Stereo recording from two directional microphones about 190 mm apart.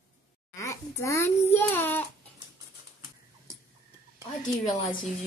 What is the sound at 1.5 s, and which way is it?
Child singing, 10° left (ahead or behind).